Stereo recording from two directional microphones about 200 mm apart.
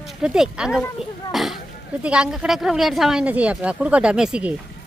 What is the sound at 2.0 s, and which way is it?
Speech, 5° right (ahead or behind).